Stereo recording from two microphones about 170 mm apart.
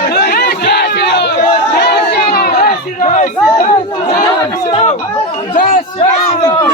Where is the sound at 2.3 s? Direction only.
60° left (ahead or behind).